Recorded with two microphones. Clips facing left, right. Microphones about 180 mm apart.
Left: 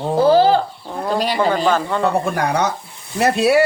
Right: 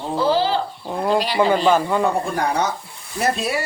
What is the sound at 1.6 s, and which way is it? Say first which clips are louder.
Speech: right 1 dB; 10° right (ahead or behind).